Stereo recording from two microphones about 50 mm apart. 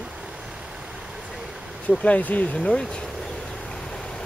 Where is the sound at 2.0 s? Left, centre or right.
Left.